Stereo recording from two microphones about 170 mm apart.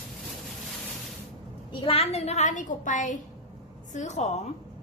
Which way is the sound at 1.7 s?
35° left (ahead or behind).